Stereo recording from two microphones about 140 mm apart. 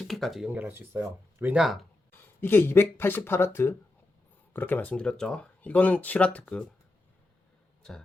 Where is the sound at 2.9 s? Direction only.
15° left (ahead or behind).